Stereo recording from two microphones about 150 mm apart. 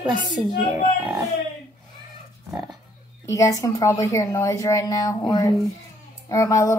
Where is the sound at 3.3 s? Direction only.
20° left (ahead or behind).